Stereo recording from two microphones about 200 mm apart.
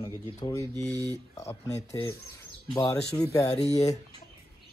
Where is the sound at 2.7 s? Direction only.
20° left (ahead or behind).